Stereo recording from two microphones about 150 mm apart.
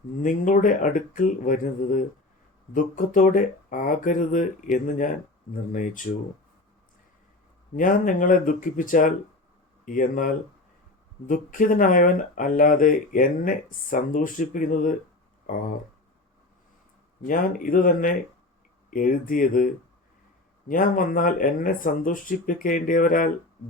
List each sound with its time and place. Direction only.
0.2 s speech: 60° left (ahead or behind)
7.8 s speech: 65° left (ahead or behind)
17.2 s speech: 65° left (ahead or behind)